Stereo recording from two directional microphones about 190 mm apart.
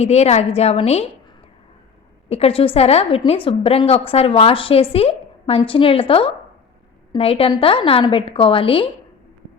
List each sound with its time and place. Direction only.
0.0 s a woman's voice: 35° left (ahead or behind)
2.3 s a woman's voice: 30° left (ahead or behind)